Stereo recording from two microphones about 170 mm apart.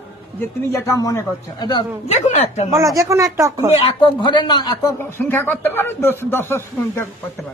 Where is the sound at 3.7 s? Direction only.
30° left (ahead or behind).